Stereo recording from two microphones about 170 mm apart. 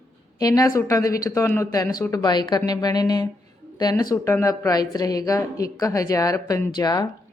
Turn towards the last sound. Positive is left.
turn(degrees=25)  # may be behind; listen again after turning